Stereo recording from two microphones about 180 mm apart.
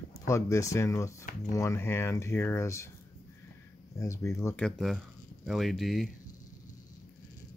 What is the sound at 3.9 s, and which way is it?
Speech, 15° left (ahead or behind).